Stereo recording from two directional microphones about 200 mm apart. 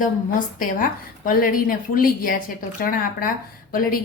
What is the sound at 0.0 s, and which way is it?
A woman's voice, 40° left (ahead or behind).